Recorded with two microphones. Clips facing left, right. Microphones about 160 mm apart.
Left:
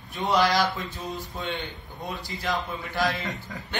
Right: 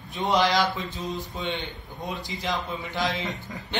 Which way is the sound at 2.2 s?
20° right (ahead or behind).